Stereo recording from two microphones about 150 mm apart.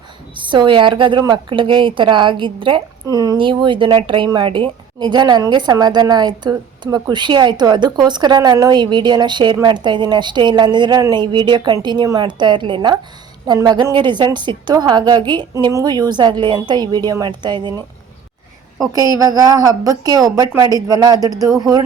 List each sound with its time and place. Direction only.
0.3 s a woman's voice: 30° right (ahead or behind)
18.9 s a woman's voice: 25° right (ahead or behind)